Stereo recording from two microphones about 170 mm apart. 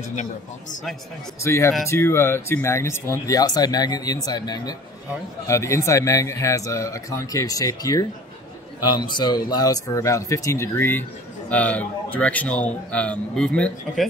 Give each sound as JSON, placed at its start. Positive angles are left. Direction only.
{"t": 0.1, "sound": "a man's voice", "side_deg": 45}
{"t": 1.4, "sound": "speech", "side_deg": 15}